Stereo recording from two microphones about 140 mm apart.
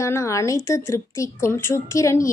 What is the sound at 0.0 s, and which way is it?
A woman's voice, 20° left (ahead or behind).